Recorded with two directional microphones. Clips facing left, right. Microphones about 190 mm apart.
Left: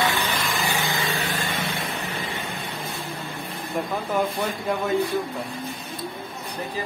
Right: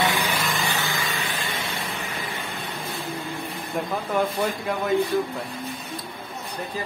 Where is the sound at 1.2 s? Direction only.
40° left (ahead or behind).